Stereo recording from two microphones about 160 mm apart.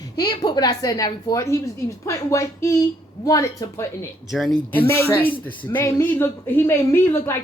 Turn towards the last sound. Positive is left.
turn(degrees=15)  # may be behind; listen again after turning